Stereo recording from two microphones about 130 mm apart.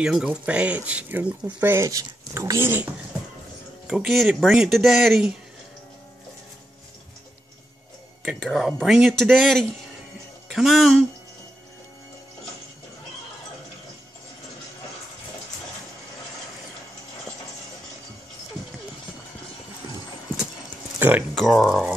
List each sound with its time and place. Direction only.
0.0 s speech: 5° right (ahead or behind)
3.8 s speech: centre (ahead or behind)
8.4 s speech: centre (ahead or behind)
21.4 s speech: centre (ahead or behind)